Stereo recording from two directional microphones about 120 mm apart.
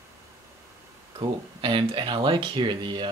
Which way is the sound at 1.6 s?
45° right (ahead or behind).